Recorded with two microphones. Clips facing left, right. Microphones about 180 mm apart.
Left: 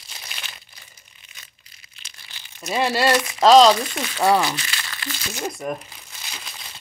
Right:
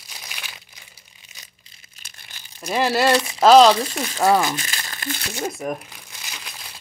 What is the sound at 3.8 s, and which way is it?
Speech, 35° right (ahead or behind).